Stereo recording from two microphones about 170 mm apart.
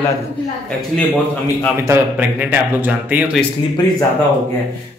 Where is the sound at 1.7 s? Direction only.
15° right (ahead or behind).